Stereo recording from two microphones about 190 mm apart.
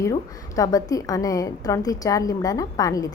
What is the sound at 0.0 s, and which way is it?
A woman's voice, 20° left (ahead or behind).